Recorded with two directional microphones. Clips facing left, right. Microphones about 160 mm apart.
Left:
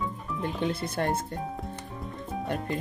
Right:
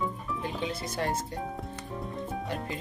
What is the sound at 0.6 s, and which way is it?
Speech, 55° left (ahead or behind).